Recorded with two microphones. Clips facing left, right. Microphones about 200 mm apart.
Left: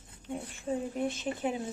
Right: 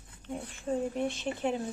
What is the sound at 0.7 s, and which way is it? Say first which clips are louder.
A woman's voice: right 1 dB; 5° left (ahead or behind).